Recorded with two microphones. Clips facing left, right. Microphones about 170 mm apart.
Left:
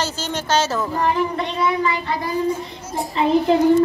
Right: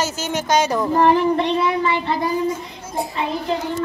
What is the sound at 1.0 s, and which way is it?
Child singing, 30° right (ahead or behind).